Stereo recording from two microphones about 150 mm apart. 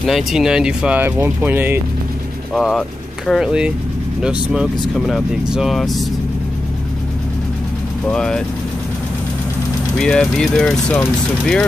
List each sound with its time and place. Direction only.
0.0 s speech: centre (ahead or behind)
2.5 s speech: centre (ahead or behind)
8.1 s speech: 5° left (ahead or behind)
9.9 s speech: 5° left (ahead or behind)